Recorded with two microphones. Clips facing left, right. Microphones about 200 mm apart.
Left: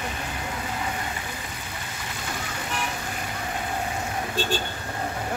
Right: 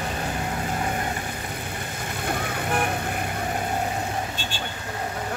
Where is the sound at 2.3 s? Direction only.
55° right (ahead or behind).